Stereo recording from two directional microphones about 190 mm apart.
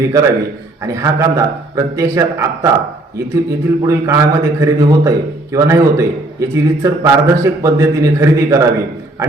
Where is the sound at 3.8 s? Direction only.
15° right (ahead or behind).